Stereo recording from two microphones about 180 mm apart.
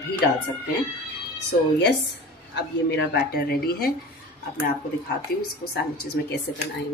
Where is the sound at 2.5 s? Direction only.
70° left (ahead or behind).